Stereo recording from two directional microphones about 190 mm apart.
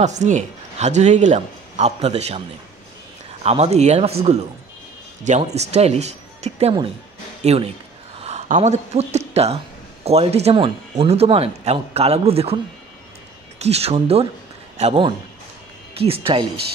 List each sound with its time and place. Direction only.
0.0 s speech: 40° right (ahead or behind)
3.4 s speech: 35° right (ahead or behind)
13.6 s a man's voice: 35° right (ahead or behind)